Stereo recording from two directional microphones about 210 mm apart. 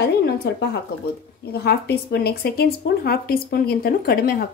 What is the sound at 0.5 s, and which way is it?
Speech, 50° left (ahead or behind).